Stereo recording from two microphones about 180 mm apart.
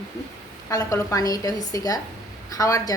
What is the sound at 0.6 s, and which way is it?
A woman's voice, 15° left (ahead or behind).